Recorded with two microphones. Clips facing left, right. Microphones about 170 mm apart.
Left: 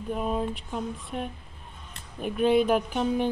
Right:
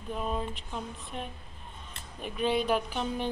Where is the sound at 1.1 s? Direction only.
50° left (ahead or behind).